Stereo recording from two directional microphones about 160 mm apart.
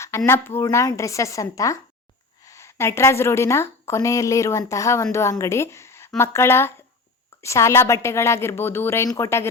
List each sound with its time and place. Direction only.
0.3 s a woman's voice: 15° left (ahead or behind)